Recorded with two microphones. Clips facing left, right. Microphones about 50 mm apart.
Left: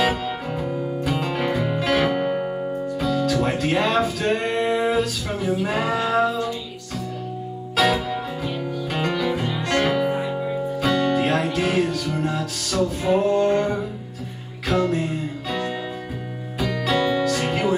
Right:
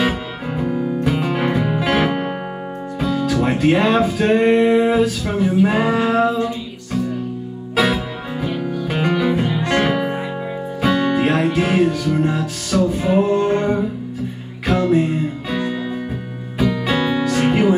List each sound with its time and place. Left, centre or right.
0.6 s music: centre
7.7 s music: centre